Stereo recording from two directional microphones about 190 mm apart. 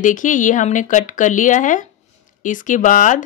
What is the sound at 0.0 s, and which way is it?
Speech, 45° left (ahead or behind).